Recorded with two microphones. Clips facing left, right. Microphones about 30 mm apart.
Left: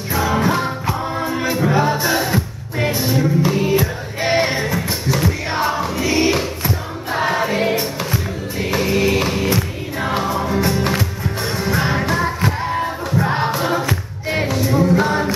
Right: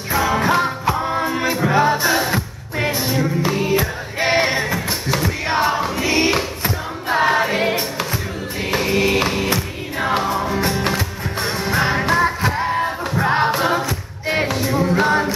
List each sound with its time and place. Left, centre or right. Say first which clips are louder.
0.4 s music: right 1 dB; right
5.9 s choir: left 3 dB; right
7.2 s music: right 1 dB; centre
8.7 s music: even; centre
14.8 s a capella: even; centre